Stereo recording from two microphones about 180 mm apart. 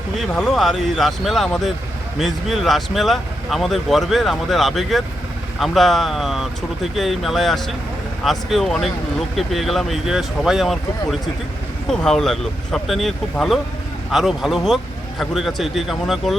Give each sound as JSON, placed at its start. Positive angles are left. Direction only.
{"t": 0.2, "sound": "speech", "side_deg": 0}